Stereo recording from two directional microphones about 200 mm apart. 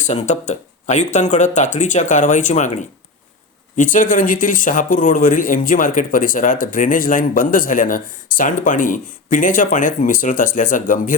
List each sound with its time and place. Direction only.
0.0 s speech: 35° left (ahead or behind)